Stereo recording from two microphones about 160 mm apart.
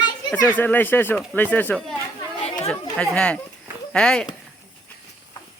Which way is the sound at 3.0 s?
5° left (ahead or behind).